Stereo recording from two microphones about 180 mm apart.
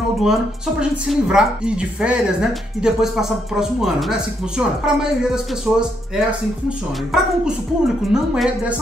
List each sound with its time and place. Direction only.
0.2 s speech: 5° right (ahead or behind)